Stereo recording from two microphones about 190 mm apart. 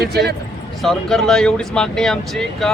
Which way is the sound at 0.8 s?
Centre (ahead or behind).